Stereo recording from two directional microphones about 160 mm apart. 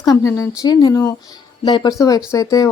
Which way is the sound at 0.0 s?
20° left (ahead or behind).